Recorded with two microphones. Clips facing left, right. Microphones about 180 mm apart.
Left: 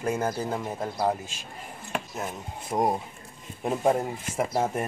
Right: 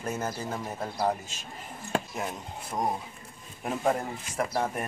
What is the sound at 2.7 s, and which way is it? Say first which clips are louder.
A man's voice: left 5 dB; 30° left (ahead or behind).